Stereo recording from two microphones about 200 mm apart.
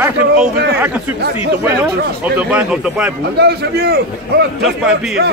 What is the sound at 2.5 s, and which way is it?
Speech, 5° right (ahead or behind).